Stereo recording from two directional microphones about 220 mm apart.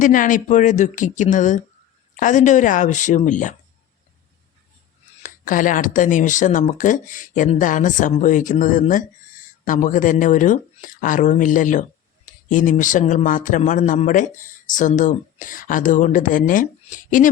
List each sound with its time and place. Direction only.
0.0 s speech: 35° left (ahead or behind)
5.2 s speech: 35° left (ahead or behind)